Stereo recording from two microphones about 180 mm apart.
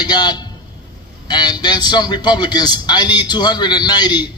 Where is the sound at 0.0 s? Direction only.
25° left (ahead or behind).